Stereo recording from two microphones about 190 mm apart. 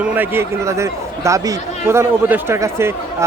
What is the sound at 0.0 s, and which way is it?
Speech, 10° right (ahead or behind).